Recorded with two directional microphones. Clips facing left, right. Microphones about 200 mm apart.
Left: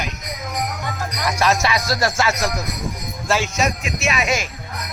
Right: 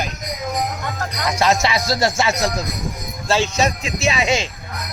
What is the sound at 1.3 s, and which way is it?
Music, 25° right (ahead or behind).